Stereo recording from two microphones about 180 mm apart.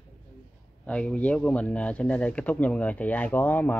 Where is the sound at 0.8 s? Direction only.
5° left (ahead or behind).